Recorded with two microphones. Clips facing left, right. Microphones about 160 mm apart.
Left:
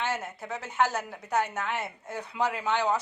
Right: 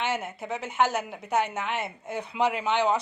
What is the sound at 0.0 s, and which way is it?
A woman's voice, 20° right (ahead or behind).